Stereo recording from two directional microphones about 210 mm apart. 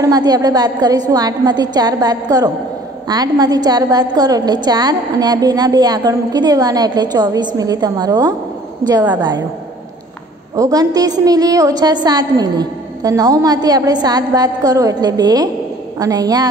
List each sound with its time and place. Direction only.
0.0 s a woman's voice: 20° right (ahead or behind)
10.5 s a woman's voice: 15° right (ahead or behind)